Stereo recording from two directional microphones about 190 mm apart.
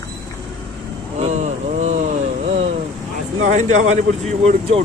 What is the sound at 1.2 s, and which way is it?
Speech, 35° right (ahead or behind).